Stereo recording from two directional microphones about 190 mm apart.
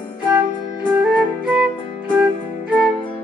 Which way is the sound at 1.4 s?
5° right (ahead or behind).